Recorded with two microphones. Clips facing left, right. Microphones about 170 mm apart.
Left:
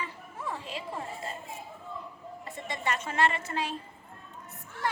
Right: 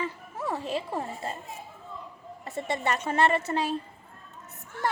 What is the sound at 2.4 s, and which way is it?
A woman's voice, 35° right (ahead or behind).